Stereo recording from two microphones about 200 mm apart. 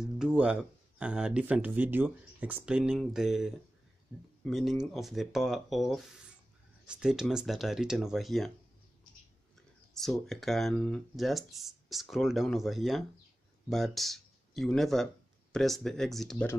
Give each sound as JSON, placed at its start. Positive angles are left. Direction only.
{"t": 0.0, "sound": "speech", "side_deg": -5}
{"t": 9.9, "sound": "speech", "side_deg": 0}